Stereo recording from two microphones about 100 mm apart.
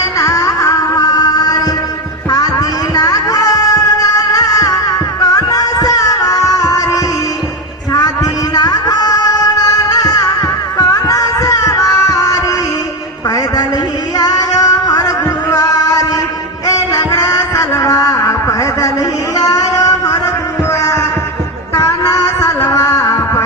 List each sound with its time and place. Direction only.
0.0 s music: 30° left (ahead or behind)
14.2 s music: 40° left (ahead or behind)
19.4 s a sound: 35° left (ahead or behind)
21.8 s music: 35° left (ahead or behind)